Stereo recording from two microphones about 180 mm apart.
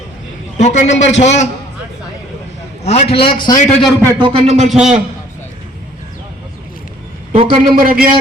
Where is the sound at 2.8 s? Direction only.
35° left (ahead or behind).